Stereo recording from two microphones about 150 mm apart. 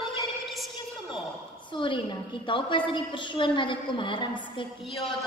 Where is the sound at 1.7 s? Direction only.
35° left (ahead or behind).